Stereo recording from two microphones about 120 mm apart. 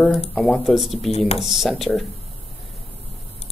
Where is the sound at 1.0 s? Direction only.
60° left (ahead or behind).